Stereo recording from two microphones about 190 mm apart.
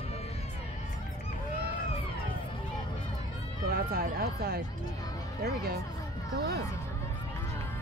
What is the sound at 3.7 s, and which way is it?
Speech, 55° right (ahead or behind).